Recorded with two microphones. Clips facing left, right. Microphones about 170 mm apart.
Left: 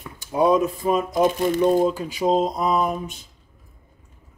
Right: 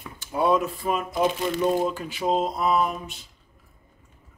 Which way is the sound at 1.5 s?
20° left (ahead or behind).